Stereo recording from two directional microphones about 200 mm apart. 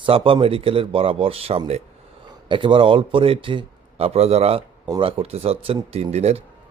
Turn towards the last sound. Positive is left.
turn(degrees=-30)  # may be behind; listen again after turning